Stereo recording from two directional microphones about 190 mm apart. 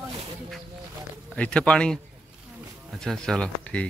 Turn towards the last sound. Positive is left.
turn(degrees=5)  # may be behind; listen again after turning